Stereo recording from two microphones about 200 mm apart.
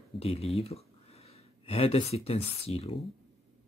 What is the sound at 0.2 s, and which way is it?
Speech, 30° left (ahead or behind).